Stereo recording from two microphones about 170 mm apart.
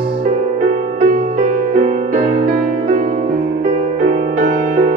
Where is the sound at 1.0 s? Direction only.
50° right (ahead or behind).